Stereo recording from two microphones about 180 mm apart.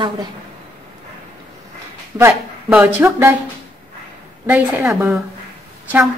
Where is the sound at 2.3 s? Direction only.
5° right (ahead or behind).